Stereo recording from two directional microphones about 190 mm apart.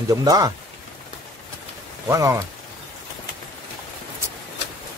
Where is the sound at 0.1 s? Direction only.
20° right (ahead or behind).